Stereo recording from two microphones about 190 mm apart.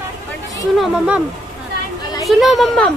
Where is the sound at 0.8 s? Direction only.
5° right (ahead or behind).